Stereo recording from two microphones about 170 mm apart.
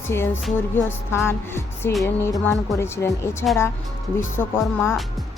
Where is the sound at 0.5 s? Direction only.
15° left (ahead or behind).